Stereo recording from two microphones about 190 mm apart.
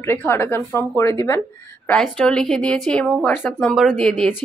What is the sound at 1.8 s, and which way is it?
A woman's voice, 5° left (ahead or behind).